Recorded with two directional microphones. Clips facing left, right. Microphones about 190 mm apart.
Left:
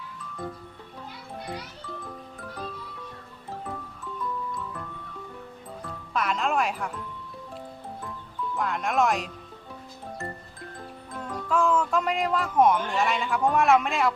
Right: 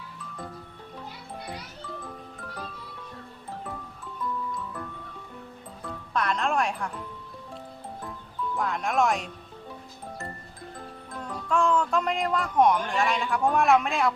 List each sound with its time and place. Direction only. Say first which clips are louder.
6.1 s speech: even; centre (ahead or behind)
8.5 s speech: even; centre (ahead or behind)
11.1 s speech: left 1 dB; 5° left (ahead or behind)